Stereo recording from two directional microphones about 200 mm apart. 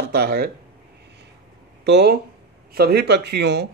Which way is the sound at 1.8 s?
55° right (ahead or behind).